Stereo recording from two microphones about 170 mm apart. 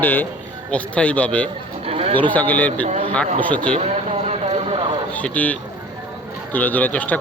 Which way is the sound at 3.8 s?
40° right (ahead or behind).